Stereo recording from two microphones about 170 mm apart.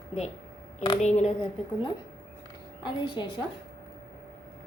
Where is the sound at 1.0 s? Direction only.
40° left (ahead or behind).